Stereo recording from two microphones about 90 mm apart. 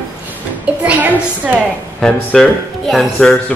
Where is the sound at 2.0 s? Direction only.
5° left (ahead or behind).